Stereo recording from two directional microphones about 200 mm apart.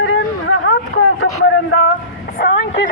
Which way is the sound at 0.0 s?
90° left.